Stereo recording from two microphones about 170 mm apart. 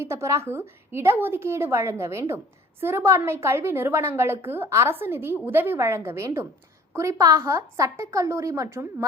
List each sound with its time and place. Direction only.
0.0 s a woman's voice: 15° right (ahead or behind)